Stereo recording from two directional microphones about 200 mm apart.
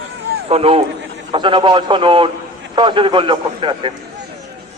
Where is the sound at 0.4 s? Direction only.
30° right (ahead or behind).